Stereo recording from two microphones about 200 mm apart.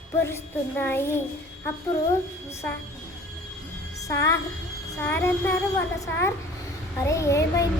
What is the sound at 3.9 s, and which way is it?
Speech, 15° left (ahead or behind).